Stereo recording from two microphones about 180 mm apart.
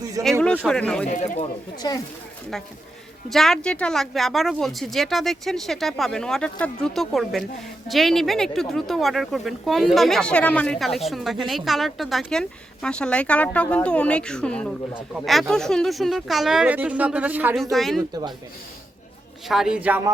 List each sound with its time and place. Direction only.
0.4 s speech: 5° left (ahead or behind)
1.1 s speech: 45° left (ahead or behind)
1.8 s speech: 25° left (ahead or behind)
3.2 s speech: centre (ahead or behind)
18.1 s speech: 20° right (ahead or behind)
19.5 s speech: centre (ahead or behind)